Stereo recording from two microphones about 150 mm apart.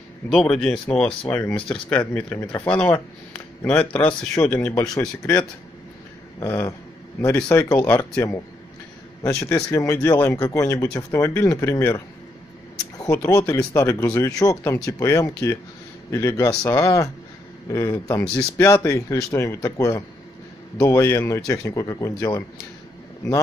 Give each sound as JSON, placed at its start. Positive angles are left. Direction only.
{"t": 0.3, "sound": "speech", "side_deg": 0}
{"t": 9.2, "sound": "speech", "side_deg": 20}